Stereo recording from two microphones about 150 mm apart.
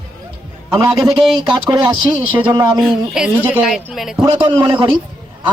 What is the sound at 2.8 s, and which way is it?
Speech, centre (ahead or behind).